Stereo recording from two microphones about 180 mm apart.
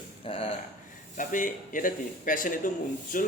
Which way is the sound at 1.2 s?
45° left (ahead or behind).